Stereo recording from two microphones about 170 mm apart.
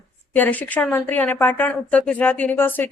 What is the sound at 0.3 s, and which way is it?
Speech, 10° left (ahead or behind).